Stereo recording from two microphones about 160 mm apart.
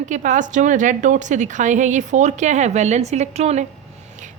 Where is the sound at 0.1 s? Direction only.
50° right (ahead or behind).